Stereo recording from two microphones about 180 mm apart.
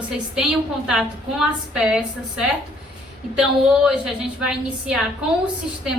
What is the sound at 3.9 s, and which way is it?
A woman's voice, 5° right (ahead or behind).